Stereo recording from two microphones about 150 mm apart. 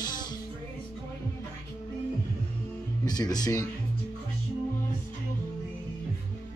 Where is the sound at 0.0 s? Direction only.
25° left (ahead or behind).